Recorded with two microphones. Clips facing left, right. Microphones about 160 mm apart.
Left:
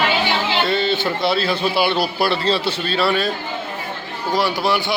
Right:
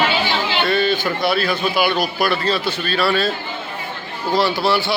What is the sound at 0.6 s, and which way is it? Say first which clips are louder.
A man's voice: right 1 dB; 25° left (ahead or behind).